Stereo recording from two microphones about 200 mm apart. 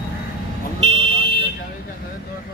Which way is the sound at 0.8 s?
30° right (ahead or behind).